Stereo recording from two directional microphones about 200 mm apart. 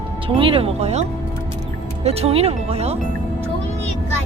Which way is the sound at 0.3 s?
25° right (ahead or behind).